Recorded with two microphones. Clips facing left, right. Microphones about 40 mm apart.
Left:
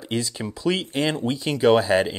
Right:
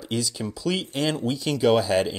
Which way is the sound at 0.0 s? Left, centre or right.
Left.